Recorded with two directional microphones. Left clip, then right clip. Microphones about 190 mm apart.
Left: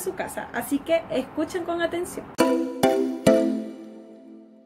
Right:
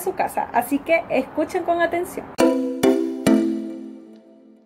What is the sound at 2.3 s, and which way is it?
Music, centre (ahead or behind).